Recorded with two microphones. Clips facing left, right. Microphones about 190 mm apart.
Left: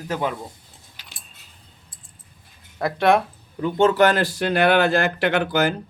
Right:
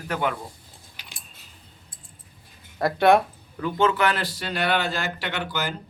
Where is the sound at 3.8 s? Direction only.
40° left (ahead or behind); by 5.7 s 55° left (ahead or behind).